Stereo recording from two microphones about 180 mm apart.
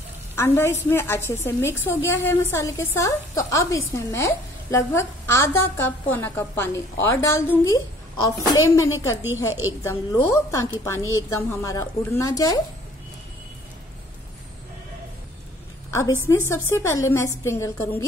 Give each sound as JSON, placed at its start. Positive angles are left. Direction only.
{"t": 0.4, "sound": "a woman's voice", "side_deg": 15}
{"t": 9.5, "sound": "a woman's voice", "side_deg": -10}
{"t": 9.8, "sound": "a woman's voice", "side_deg": 15}
{"t": 16.3, "sound": "a woman's voice", "side_deg": 15}